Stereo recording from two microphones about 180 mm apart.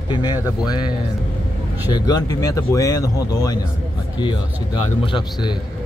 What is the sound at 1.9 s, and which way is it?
A man's voice, 20° left (ahead or behind).